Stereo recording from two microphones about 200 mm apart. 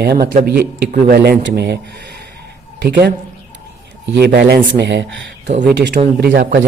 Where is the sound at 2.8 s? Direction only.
60° right (ahead or behind).